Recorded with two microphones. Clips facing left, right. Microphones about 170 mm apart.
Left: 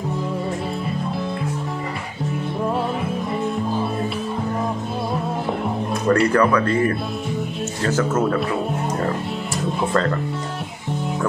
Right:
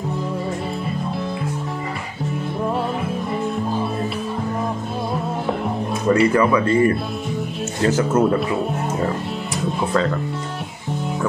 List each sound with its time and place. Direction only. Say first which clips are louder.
6.0 s speech: right 1 dB; 5° right (ahead or behind)
7.9 s speech: even; 15° right (ahead or behind)